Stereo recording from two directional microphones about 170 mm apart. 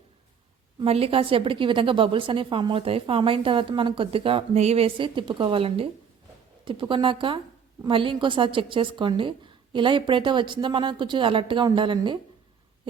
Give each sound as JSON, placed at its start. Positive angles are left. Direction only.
{"t": 0.8, "sound": "a woman's voice", "side_deg": -35}